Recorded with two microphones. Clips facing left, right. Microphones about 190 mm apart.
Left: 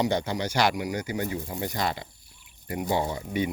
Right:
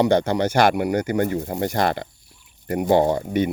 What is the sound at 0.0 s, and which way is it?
Speech, 65° right (ahead or behind).